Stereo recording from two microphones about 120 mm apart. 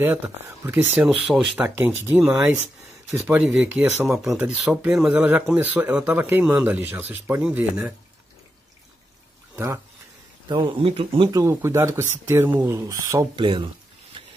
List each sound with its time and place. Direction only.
0.7 s speech: 15° right (ahead or behind)
1.6 s speech: 20° right (ahead or behind)
3.8 s speech: 20° right (ahead or behind)
10.5 s speech: 45° right (ahead or behind)
11.2 s speech: 25° right (ahead or behind)
13.4 s speech: 40° right (ahead or behind)